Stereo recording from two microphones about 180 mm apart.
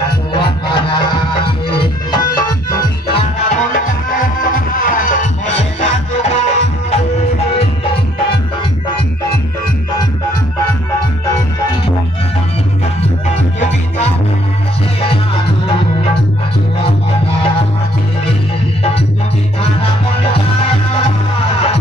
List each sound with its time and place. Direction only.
0.3 s music: 25° left (ahead or behind)
3.4 s music: 45° left (ahead or behind)
13.6 s music: 40° left (ahead or behind)
16.8 s music: 35° left (ahead or behind)
20.9 s music: 35° left (ahead or behind)